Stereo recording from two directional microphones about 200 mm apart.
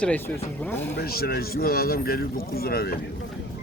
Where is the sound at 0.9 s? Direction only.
50° left (ahead or behind).